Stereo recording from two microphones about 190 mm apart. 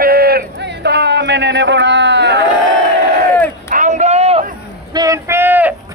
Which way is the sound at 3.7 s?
40° right (ahead or behind).